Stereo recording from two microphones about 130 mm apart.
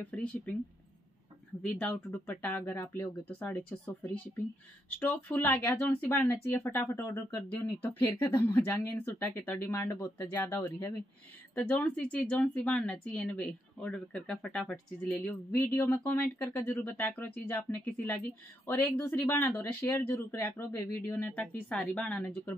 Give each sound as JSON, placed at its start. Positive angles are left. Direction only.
{"t": 0.0, "sound": "speech", "side_deg": 10}
{"t": 1.6, "sound": "speech", "side_deg": 10}